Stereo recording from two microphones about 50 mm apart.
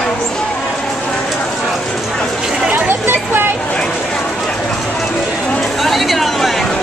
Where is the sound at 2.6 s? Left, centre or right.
Right.